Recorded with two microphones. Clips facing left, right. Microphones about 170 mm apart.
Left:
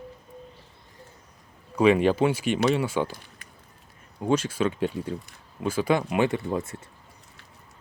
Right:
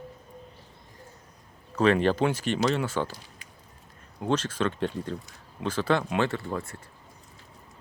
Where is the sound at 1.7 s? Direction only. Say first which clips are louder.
Left 3 dB; 10° left (ahead or behind).